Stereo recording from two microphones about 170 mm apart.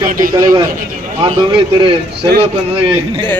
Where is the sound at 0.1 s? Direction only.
55° right (ahead or behind).